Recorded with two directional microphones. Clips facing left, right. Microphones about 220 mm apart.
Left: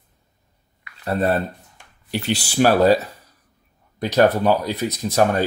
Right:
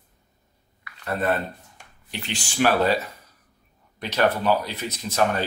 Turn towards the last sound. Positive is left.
turn(degrees=35)  # may be behind; listen again after turning